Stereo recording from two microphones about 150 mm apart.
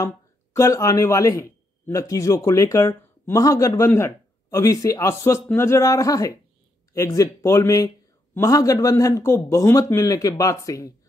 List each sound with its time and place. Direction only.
0.6 s speech: 20° left (ahead or behind)